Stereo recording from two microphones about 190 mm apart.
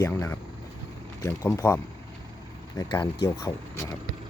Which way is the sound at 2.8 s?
20° left (ahead or behind).